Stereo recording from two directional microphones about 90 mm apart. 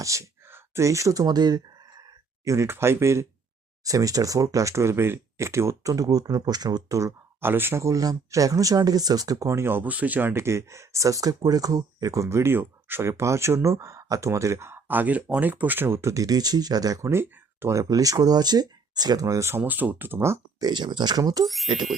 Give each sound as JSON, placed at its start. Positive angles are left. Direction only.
{"t": 0.0, "sound": "speech", "side_deg": -35}
{"t": 2.4, "sound": "speech", "side_deg": -40}
{"t": 2.6, "sound": "speech", "side_deg": -25}
{"t": 7.4, "sound": "speech", "side_deg": -25}
{"t": 17.7, "sound": "speech", "side_deg": -40}
{"t": 20.6, "sound": "speech", "side_deg": -55}
{"t": 21.4, "sound": "speech", "side_deg": 0}